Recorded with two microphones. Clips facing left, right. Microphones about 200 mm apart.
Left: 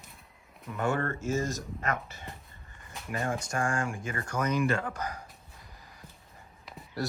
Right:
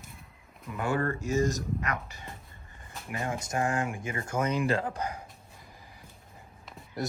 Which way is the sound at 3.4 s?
20° right (ahead or behind).